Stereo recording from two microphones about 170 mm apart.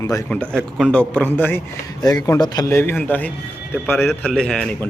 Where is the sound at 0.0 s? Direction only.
20° left (ahead or behind).